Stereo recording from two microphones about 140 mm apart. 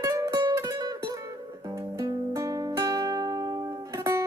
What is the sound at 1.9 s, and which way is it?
Music, 25° right (ahead or behind).